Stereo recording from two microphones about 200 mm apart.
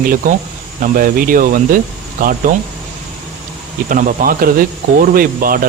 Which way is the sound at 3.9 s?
40° right (ahead or behind).